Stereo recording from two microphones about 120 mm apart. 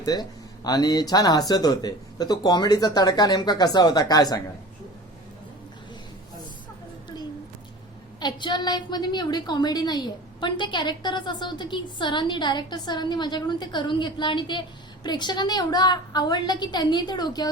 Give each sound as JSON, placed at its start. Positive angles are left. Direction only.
{"t": 0.0, "sound": "a woman's voice", "side_deg": 35}
{"t": 8.2, "sound": "a woman's voice", "side_deg": 40}